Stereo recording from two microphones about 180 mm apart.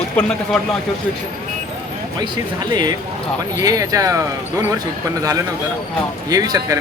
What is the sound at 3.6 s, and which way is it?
Speech, 20° right (ahead or behind).